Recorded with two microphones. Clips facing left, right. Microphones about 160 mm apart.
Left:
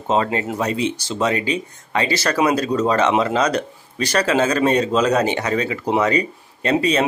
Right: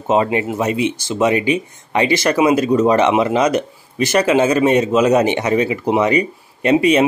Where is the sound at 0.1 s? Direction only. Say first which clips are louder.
Right 4 dB; 15° right (ahead or behind).